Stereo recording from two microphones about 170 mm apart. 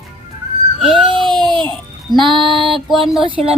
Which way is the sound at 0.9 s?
30° right (ahead or behind).